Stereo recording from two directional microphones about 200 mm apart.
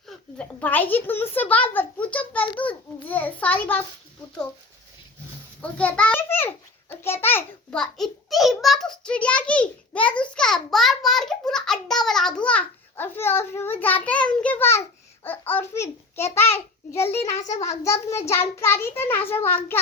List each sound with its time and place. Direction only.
0.3 s a child's voice: 10° left (ahead or behind)
5.6 s a child's voice: 5° left (ahead or behind)
17.3 s a child's voice: 35° left (ahead or behind)
17.6 s a child's voice: 15° left (ahead or behind)